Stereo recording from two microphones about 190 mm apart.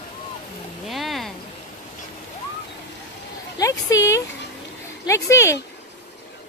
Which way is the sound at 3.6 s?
15° left (ahead or behind).